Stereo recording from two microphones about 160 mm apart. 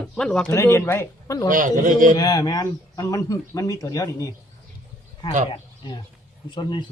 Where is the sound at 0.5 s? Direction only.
15° left (ahead or behind).